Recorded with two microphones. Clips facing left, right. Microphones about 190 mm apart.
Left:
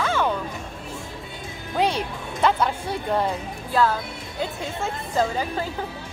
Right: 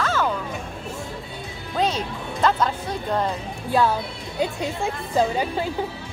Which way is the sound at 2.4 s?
10° left (ahead or behind).